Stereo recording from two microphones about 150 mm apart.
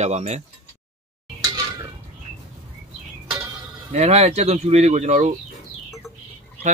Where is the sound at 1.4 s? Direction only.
25° right (ahead or behind).